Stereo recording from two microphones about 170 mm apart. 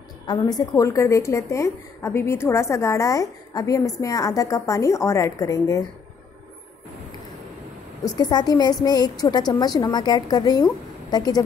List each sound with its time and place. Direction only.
0.3 s a woman's voice: 25° left (ahead or behind)
8.0 s a woman's voice: 25° left (ahead or behind)